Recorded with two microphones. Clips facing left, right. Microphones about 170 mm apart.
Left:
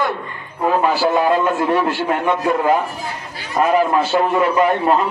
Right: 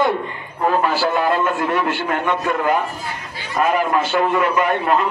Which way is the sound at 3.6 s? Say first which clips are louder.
Left 3 dB; 25° left (ahead or behind).